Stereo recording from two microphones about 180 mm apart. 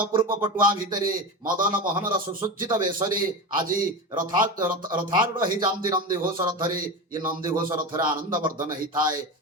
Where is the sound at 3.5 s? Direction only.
50° right (ahead or behind).